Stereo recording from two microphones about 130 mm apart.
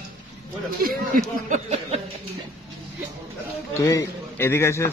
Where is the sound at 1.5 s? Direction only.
55° right (ahead or behind).